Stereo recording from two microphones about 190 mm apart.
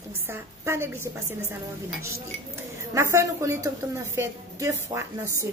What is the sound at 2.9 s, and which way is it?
A woman's voice, 15° right (ahead or behind).